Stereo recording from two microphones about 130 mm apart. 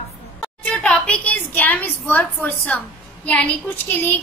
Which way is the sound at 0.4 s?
10° left (ahead or behind).